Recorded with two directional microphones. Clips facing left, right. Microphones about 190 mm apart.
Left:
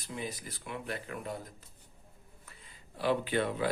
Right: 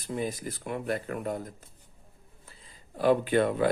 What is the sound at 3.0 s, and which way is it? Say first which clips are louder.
Speech: right 7 dB; 50° right (ahead or behind).